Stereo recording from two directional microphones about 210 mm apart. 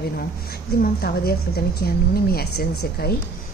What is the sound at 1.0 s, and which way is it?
A woman's voice, 50° left (ahead or behind).